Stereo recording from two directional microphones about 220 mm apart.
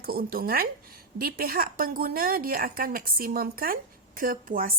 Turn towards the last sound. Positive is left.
turn(degrees=-40)  # may be behind; listen again after turning